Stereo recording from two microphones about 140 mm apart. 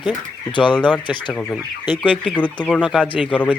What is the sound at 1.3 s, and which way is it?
Speech, 10° left (ahead or behind).